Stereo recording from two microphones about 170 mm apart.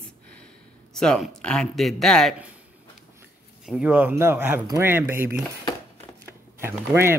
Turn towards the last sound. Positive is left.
turn(degrees=-15)  # may be behind; listen again after turning